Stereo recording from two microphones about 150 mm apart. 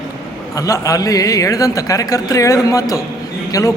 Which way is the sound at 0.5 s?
20° left (ahead or behind).